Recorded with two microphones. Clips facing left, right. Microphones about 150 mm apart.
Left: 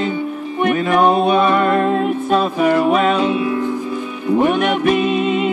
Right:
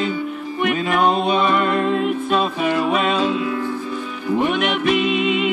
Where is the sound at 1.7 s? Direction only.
45° left (ahead or behind).